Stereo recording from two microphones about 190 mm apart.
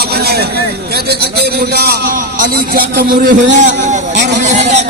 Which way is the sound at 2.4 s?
55° right (ahead or behind).